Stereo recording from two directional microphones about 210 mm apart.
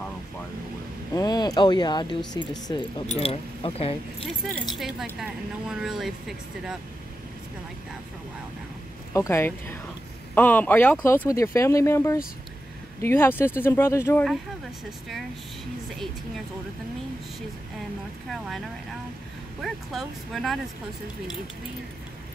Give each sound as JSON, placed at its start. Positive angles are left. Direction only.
{"t": 1.1, "sound": "speech", "side_deg": 20}
{"t": 4.2, "sound": "speech", "side_deg": 5}
{"t": 9.1, "sound": "speech", "side_deg": 15}
{"t": 19.6, "sound": "speech", "side_deg": 0}